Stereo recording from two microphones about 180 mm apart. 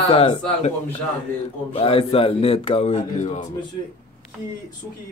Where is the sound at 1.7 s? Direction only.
30° left (ahead or behind).